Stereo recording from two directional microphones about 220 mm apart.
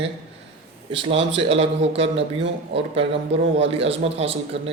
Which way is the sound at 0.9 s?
25° right (ahead or behind).